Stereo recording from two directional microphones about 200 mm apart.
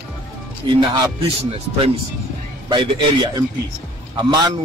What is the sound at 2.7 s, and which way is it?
Speech, 25° right (ahead or behind).